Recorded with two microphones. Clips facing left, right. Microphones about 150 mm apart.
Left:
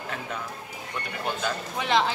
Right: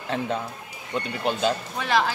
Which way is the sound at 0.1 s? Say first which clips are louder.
Right 7 dB; 25° right (ahead or behind).